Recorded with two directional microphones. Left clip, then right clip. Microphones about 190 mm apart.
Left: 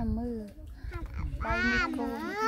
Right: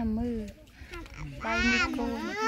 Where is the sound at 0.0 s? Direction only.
15° right (ahead or behind).